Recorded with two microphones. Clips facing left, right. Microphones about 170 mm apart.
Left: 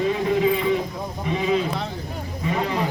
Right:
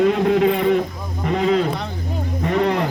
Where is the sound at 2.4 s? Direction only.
60° right (ahead or behind).